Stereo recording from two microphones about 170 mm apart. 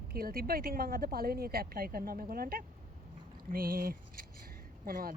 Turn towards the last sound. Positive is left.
turn(degrees=-55)  # may be behind; listen again after turning